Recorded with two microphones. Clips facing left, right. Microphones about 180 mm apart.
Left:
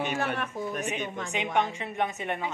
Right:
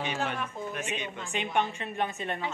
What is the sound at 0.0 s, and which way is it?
Speech, 50° left (ahead or behind).